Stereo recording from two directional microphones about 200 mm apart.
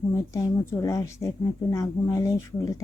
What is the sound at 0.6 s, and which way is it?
Speech, 15° left (ahead or behind).